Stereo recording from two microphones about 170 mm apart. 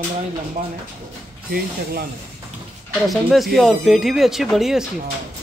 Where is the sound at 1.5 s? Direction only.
65° right (ahead or behind).